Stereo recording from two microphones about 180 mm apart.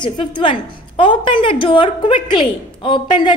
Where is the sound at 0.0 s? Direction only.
25° left (ahead or behind).